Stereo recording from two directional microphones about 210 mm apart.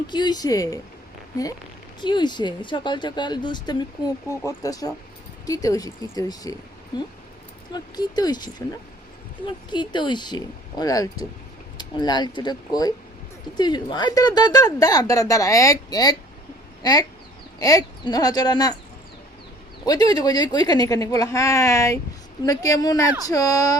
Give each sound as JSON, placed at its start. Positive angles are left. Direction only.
{"t": 0.1, "sound": "speech", "side_deg": 20}
{"t": 2.0, "sound": "speech", "side_deg": 20}
{"t": 9.7, "sound": "speech", "side_deg": 20}
{"t": 19.8, "sound": "speech", "side_deg": 20}